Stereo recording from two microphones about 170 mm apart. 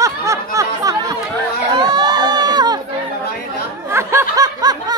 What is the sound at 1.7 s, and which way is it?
Crowd, 25° right (ahead or behind).